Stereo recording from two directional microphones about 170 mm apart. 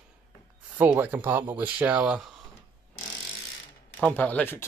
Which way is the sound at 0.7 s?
10° right (ahead or behind).